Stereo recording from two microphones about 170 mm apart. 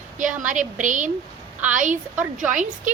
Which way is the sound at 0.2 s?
50° right (ahead or behind).